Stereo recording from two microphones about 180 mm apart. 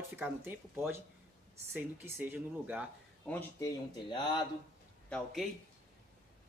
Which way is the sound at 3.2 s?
10° left (ahead or behind).